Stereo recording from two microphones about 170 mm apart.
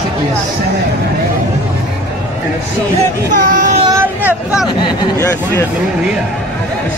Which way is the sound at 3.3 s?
50° right (ahead or behind).